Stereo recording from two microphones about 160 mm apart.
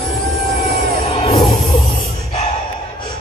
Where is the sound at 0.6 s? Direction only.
40° left (ahead or behind).